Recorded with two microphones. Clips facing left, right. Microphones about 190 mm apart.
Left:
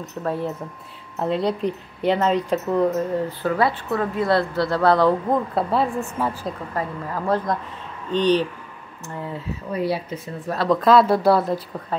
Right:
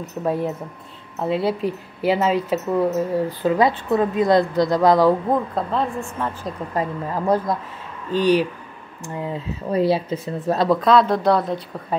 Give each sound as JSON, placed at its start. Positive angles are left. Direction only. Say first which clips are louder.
{"t": 0.1, "sound": "a woman's voice", "louder": "right 3 dB", "side_deg": -15}
{"t": 3.4, "sound": "a woman's voice", "louder": "right 4 dB", "side_deg": -15}
{"t": 5.5, "sound": "a woman's voice", "louder": "left 2 dB", "side_deg": 5}
{"t": 6.7, "sound": "a woman's voice", "louder": "right 6 dB", "side_deg": -15}
{"t": 9.7, "sound": "speech", "louder": "right 5 dB", "side_deg": -30}
{"t": 10.7, "sound": "speech", "louder": "left 2 dB", "side_deg": 0}